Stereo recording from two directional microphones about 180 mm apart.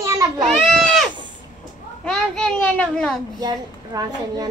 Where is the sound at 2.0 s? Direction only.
5° left (ahead or behind).